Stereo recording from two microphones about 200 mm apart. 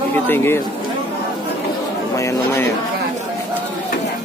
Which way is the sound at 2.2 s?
15° left (ahead or behind).